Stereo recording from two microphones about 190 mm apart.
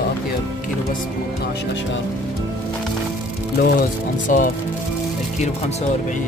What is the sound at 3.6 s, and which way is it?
Speech, 45° left (ahead or behind).